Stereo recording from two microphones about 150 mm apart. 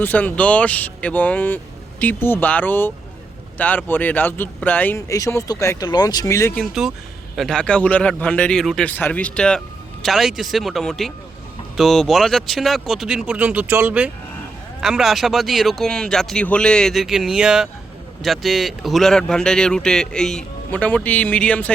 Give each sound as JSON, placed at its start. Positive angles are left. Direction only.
{"t": 0.0, "sound": "speech", "side_deg": 10}
{"t": 6.6, "sound": "speech", "side_deg": 0}